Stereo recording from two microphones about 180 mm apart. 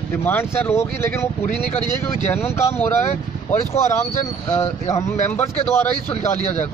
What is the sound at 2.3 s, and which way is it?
Speech, 15° left (ahead or behind).